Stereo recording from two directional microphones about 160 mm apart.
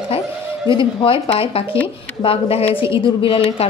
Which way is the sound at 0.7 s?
35° left (ahead or behind).